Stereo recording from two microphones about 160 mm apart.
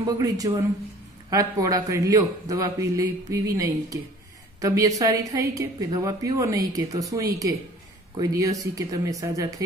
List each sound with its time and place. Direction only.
0.0 s a man's voice: 25° right (ahead or behind)